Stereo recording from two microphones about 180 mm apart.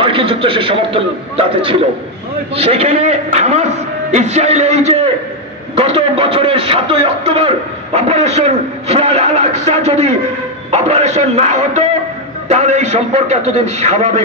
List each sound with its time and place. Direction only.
0.0 s a man's voice: 30° right (ahead or behind)